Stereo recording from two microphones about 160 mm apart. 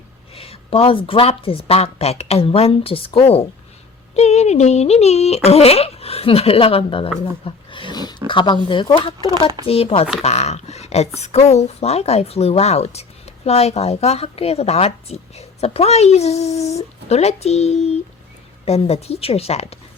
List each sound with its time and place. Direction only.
0.3 s speech: 35° left (ahead or behind)
7.4 s a sound: 30° left (ahead or behind)
8.3 s speech: 30° left (ahead or behind)
9.6 s speech: 35° left (ahead or behind)